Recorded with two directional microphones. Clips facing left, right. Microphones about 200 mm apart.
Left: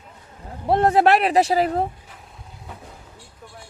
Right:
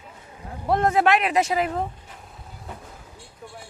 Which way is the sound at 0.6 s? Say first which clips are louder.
Left 3 dB; 30° left (ahead or behind).